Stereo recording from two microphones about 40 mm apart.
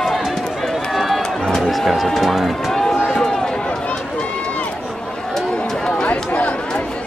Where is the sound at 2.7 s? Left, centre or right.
Centre.